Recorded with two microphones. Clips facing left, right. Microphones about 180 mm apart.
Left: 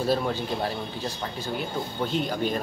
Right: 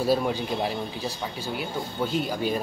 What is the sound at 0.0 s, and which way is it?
Speech, 10° right (ahead or behind).